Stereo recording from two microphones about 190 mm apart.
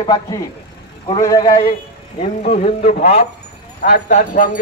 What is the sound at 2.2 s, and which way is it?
A man's voice, 35° left (ahead or behind).